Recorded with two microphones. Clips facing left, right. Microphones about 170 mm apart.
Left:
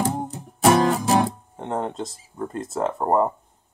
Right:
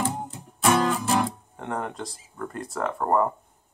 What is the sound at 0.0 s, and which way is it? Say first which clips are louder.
Music: left 4 dB; 40° left (ahead or behind).